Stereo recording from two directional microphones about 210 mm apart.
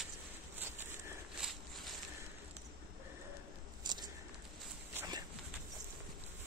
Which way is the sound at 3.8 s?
20° right (ahead or behind).